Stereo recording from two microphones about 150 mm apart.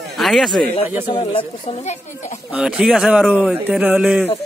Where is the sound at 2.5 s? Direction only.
5° right (ahead or behind).